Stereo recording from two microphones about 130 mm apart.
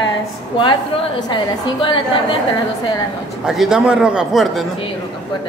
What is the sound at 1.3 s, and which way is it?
A woman's voice, 40° left (ahead or behind).